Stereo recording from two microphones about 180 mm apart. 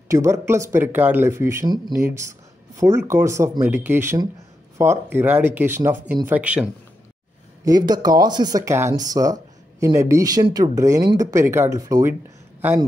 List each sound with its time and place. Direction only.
0.1 s speech: 15° right (ahead or behind)
7.6 s speech: 20° right (ahead or behind)